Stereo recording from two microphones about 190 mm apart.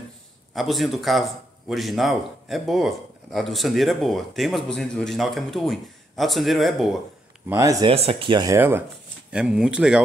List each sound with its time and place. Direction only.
0.6 s speech: centre (ahead or behind)
7.4 s speech: 20° right (ahead or behind)
7.9 s speech: 30° right (ahead or behind); by 10.0 s 5° right (ahead or behind)